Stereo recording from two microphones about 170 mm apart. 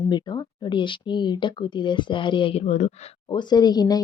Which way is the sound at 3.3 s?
25° left (ahead or behind).